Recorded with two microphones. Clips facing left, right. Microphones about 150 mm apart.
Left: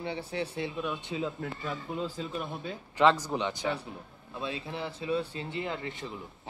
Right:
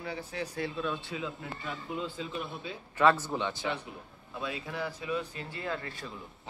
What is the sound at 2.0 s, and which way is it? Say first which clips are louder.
Speech: left 2 dB; 40° left (ahead or behind).